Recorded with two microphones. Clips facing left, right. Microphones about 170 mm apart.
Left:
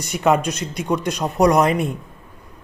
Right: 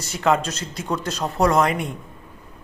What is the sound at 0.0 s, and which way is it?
A man's voice, 15° left (ahead or behind).